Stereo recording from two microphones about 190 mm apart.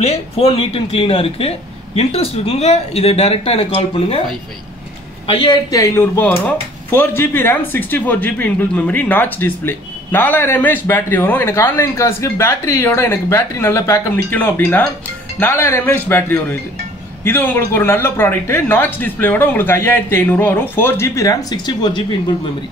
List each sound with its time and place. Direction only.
0.0 s speech: 30° left (ahead or behind)
5.2 s speech: 25° left (ahead or behind)